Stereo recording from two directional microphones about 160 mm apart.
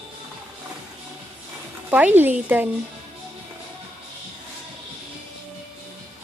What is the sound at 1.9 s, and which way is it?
Speech, 10° right (ahead or behind).